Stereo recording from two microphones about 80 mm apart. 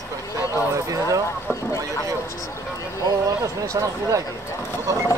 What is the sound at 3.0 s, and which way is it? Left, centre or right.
Speech, right.